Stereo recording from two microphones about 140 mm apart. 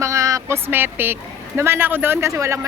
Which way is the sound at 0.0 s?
20° right (ahead or behind).